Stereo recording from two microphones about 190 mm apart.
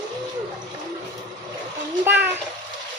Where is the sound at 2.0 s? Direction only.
10° right (ahead or behind).